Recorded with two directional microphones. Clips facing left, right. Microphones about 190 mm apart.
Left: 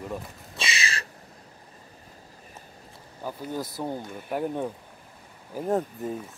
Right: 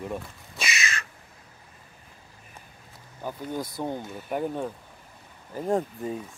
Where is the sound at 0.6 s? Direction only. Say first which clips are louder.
Even; 30° left (ahead or behind).